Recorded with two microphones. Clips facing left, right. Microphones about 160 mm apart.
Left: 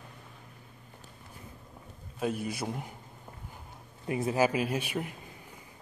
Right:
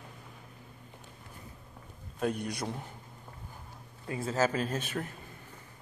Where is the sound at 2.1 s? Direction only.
5° left (ahead or behind).